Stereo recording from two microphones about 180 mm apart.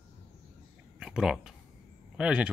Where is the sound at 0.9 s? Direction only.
5° right (ahead or behind).